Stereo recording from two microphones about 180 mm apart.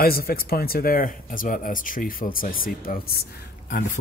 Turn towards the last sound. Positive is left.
turn(degrees=50)  # may be behind; listen again after turning